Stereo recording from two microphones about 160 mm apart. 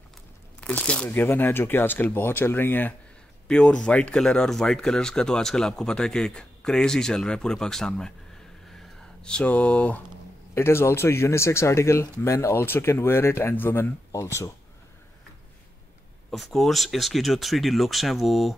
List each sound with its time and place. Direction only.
0.6 s speech: 10° left (ahead or behind)
8.7 s a sound: 5° left (ahead or behind)
10.5 s speech: 15° left (ahead or behind)
16.3 s speech: centre (ahead or behind)